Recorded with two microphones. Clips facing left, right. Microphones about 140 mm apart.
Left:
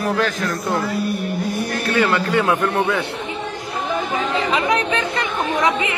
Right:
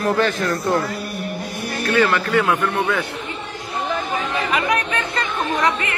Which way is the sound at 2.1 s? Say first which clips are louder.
Left 1 dB; 20° left (ahead or behind).